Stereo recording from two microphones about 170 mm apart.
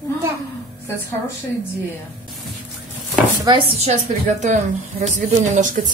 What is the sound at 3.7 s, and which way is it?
A woman's voice, 40° right (ahead or behind).